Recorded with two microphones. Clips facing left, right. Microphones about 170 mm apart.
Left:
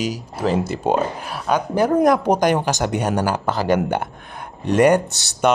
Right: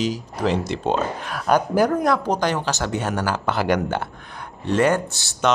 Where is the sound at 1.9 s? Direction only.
20° left (ahead or behind).